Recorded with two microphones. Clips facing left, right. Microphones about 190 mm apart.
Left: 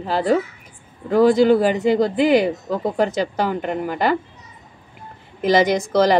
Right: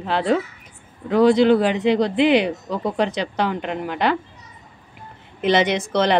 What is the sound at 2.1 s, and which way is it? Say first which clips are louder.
Speech: even; 45° left (ahead or behind).